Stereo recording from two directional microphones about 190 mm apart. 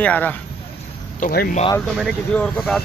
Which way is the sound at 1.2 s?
55° left (ahead or behind).